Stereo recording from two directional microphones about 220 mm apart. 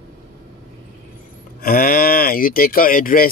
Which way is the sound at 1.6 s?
40° left (ahead or behind).